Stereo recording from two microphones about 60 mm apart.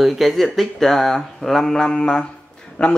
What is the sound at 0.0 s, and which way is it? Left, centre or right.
Speech, centre.